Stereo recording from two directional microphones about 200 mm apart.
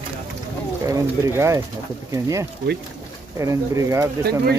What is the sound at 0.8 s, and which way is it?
Speech, 15° right (ahead or behind).